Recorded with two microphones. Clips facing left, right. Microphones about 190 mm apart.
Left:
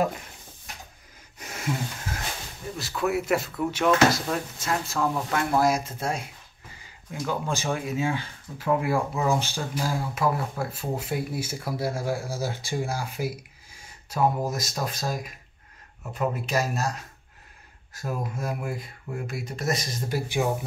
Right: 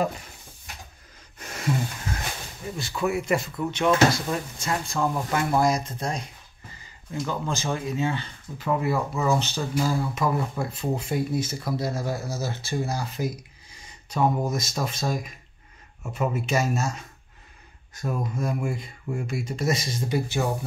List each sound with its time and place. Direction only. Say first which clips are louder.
2.8 s speech: even; centre (ahead or behind)